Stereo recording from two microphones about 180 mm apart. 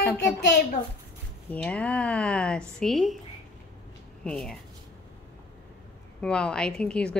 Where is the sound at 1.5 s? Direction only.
5° left (ahead or behind).